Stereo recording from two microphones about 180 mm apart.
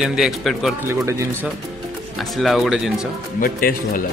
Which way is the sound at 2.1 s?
Centre (ahead or behind).